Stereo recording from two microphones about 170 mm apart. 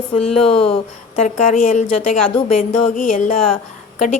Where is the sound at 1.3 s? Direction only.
50° left (ahead or behind).